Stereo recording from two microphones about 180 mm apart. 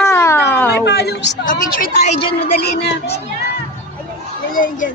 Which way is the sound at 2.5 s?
60° left (ahead or behind).